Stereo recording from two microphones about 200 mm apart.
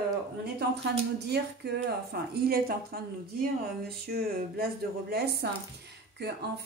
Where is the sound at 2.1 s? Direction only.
55° right (ahead or behind).